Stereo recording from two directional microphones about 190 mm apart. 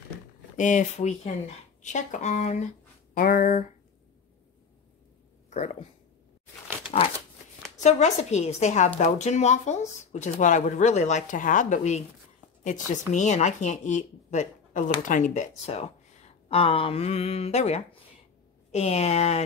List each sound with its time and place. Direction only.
0.6 s a woman's voice: 40° left (ahead or behind)
5.5 s speech: 35° left (ahead or behind)
7.8 s a woman's voice: 35° left (ahead or behind)